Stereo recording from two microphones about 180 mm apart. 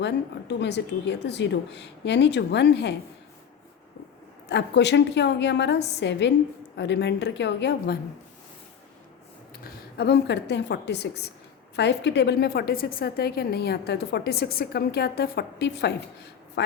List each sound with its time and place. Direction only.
0.0 s a woman's voice: 75° left (ahead or behind)
4.4 s a woman's voice: 75° left (ahead or behind)
9.6 s a woman's voice: 65° left (ahead or behind)
16.6 s speech: 80° left